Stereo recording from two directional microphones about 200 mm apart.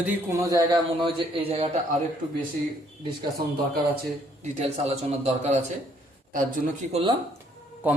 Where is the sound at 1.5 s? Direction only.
30° right (ahead or behind).